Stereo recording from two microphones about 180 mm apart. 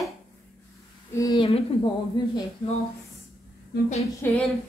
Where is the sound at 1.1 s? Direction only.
20° left (ahead or behind).